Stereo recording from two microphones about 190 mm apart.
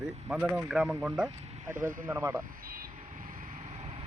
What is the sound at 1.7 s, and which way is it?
Speech, 45° right (ahead or behind).